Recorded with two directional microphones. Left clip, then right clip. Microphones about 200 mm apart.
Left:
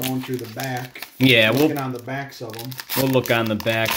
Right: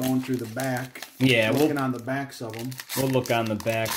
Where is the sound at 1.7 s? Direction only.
45° right (ahead or behind).